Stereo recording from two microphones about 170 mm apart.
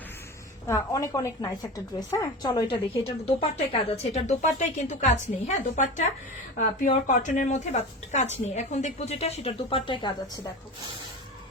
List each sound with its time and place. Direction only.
0.7 s a woman's voice: 20° left (ahead or behind)